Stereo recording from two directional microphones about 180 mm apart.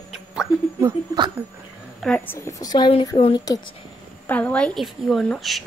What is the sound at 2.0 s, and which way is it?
Speech, 5° left (ahead or behind).